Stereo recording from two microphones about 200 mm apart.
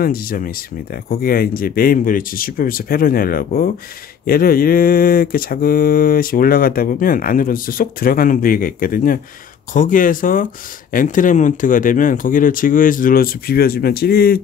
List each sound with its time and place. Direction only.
0.0 s speech: 45° left (ahead or behind)